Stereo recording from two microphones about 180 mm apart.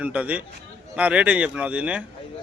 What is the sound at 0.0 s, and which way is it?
A man's voice, 10° right (ahead or behind).